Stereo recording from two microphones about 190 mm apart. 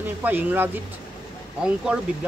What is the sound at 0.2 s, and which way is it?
Speech, 10° right (ahead or behind).